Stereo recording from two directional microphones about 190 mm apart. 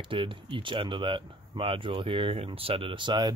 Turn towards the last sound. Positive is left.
turn(degrees=-25)  # may be behind; listen again after turning